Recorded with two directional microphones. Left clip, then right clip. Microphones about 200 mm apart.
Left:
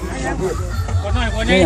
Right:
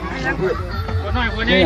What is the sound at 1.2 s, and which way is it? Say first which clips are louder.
Speech: even; 45° right (ahead or behind).